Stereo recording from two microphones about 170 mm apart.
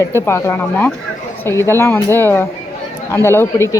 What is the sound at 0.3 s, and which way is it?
Speech, 15° left (ahead or behind).